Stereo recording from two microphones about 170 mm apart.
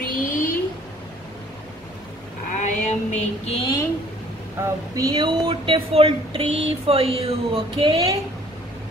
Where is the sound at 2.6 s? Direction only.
45° left (ahead or behind).